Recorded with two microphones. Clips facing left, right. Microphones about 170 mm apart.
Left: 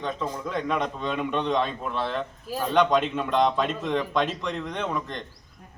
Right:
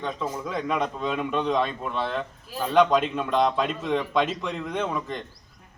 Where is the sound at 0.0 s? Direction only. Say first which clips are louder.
Even; centre (ahead or behind).